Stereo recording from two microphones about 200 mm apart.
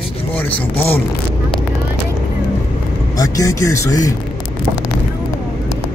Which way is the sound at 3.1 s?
15° left (ahead or behind).